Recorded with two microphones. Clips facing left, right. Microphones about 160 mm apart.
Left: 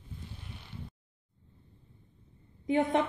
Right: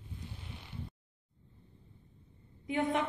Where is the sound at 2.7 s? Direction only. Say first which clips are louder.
Left 5 dB; 35° left (ahead or behind).